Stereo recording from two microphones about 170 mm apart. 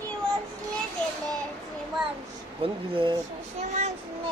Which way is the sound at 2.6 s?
30° right (ahead or behind).